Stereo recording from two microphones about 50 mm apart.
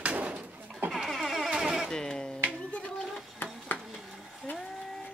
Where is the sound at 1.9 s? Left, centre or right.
Centre.